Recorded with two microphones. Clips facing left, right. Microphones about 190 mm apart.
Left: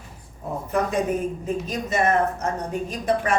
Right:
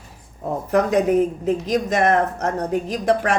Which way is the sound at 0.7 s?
70° right (ahead or behind).